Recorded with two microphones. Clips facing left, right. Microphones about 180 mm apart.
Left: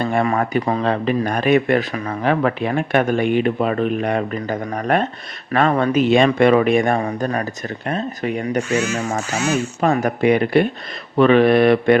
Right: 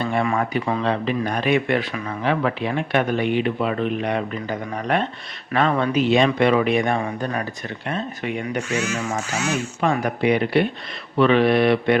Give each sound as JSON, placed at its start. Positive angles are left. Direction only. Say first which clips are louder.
{"t": 0.0, "sound": "speech", "louder": "left 3 dB", "side_deg": 45}